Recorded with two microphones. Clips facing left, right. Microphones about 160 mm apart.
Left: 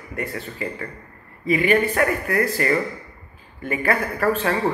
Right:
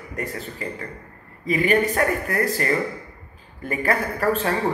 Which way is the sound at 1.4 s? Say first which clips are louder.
Left 1 dB; 40° right (ahead or behind).